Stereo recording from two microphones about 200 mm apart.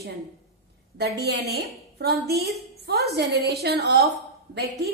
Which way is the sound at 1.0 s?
55° right (ahead or behind).